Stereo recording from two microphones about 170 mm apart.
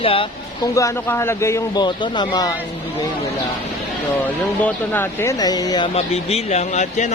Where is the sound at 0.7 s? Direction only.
15° left (ahead or behind).